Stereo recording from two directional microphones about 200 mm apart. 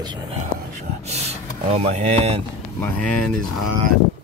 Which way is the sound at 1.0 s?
30° right (ahead or behind).